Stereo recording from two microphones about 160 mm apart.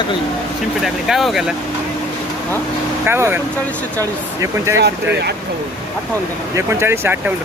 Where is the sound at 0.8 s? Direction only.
Centre (ahead or behind).